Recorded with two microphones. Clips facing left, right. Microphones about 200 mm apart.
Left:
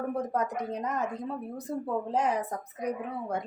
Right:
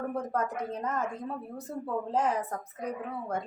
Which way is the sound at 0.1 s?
15° left (ahead or behind).